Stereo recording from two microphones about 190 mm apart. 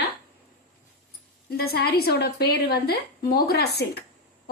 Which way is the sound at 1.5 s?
55° left (ahead or behind).